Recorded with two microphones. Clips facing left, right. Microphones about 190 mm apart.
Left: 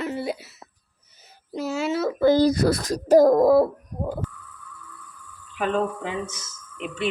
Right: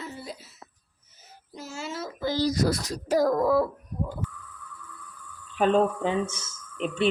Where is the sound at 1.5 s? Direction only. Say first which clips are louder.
Left 11 dB; 70° left (ahead or behind).